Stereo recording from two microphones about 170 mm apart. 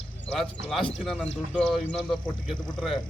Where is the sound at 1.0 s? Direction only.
5° left (ahead or behind).